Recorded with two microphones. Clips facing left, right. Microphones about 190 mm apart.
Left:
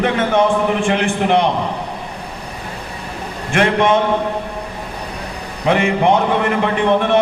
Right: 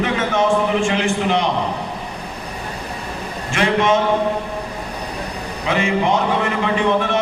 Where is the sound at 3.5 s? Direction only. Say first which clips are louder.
Left 2 dB; 55° left (ahead or behind).